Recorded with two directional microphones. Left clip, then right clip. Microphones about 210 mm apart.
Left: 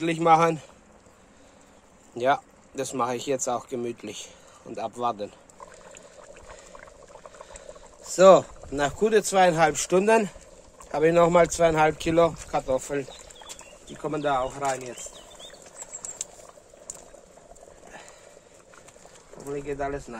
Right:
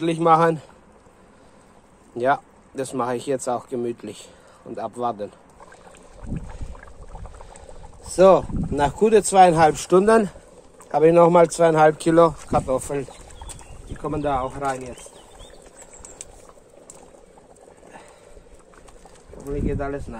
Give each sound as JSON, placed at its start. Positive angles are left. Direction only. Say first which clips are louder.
{"t": 0.0, "sound": "speech", "louder": "right 3 dB", "side_deg": 0}
{"t": 2.1, "sound": "speech", "louder": "right 3 dB", "side_deg": 0}
{"t": 7.3, "sound": "boiling", "louder": "even", "side_deg": 0}
{"t": 8.7, "sound": "speech", "louder": "right 5 dB", "side_deg": -20}
{"t": 14.0, "sound": "speech", "louder": "right 2 dB", "side_deg": -5}
{"t": 19.3, "sound": "speech", "louder": "right 4 dB", "side_deg": 0}